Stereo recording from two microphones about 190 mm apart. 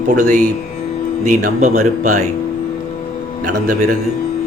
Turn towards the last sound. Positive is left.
turn(degrees=-45)  # may be behind; listen again after turning